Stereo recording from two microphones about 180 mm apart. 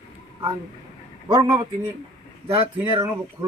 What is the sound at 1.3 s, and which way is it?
Speech, 30° right (ahead or behind).